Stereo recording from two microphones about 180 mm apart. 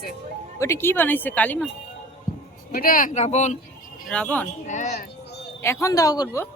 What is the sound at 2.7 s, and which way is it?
Speech, 50° left (ahead or behind).